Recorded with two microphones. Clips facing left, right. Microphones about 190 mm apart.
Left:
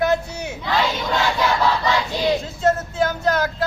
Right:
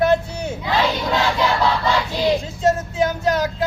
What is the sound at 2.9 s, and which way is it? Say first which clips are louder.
Speech: right 1 dB; 10° right (ahead or behind).